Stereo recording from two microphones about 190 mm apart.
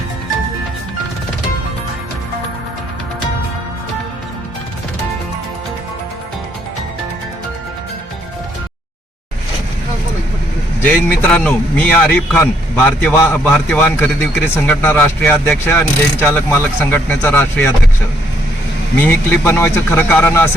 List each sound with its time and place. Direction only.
10.8 s a man's voice: 10° left (ahead or behind)
18.9 s a man's voice: 10° left (ahead or behind)